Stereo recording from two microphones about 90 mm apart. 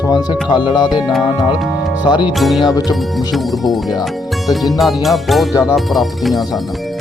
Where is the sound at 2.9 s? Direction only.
Centre (ahead or behind).